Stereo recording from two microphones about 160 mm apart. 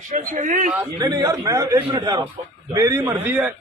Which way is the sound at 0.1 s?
55° right (ahead or behind).